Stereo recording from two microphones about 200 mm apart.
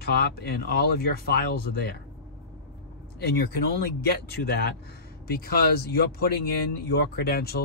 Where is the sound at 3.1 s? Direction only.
50° left (ahead or behind).